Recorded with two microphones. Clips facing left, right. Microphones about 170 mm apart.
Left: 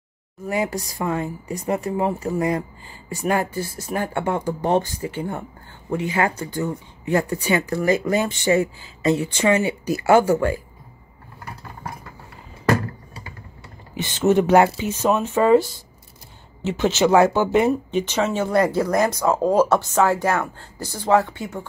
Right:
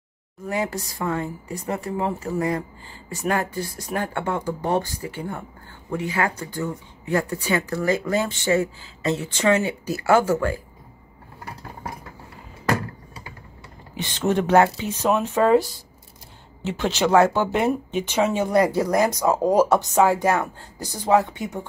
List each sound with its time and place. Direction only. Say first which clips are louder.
0.5 s speech: left 2 dB; 15° left (ahead or behind)
13.9 s speech: left 5 dB; 5° left (ahead or behind)
15.0 s speech: left 2 dB; centre (ahead or behind)
16.6 s speech: left 4 dB; 5° left (ahead or behind); by 21.6 s 15° right (ahead or behind)